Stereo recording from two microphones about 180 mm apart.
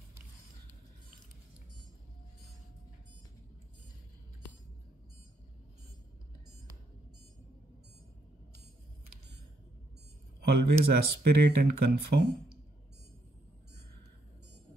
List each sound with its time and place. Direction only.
10.4 s speech: 60° right (ahead or behind)